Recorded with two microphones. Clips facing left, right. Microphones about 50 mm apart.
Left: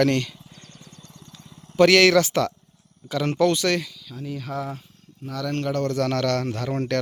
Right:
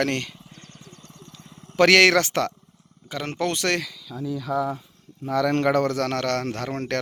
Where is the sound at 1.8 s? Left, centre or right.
Right.